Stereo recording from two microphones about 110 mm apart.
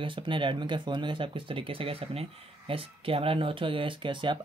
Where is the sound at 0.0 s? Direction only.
50° right (ahead or behind).